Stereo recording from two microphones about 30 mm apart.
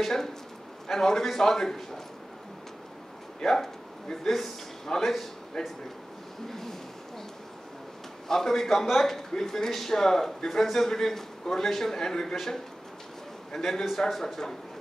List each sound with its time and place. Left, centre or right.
0.0 s a man's voice: centre
3.5 s a man's voice: centre
8.3 s a man's voice: centre